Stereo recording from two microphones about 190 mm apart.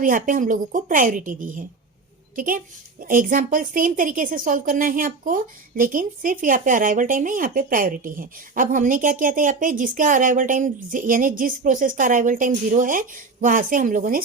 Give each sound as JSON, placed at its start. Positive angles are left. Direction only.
{"t": 0.0, "sound": "a woman's voice", "side_deg": -45}